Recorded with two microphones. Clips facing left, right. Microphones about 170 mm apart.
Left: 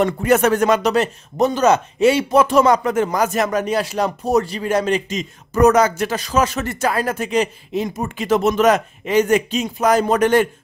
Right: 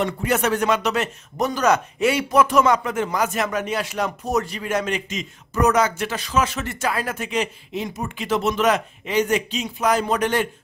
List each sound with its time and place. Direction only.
0.0 s speech: 50° left (ahead or behind)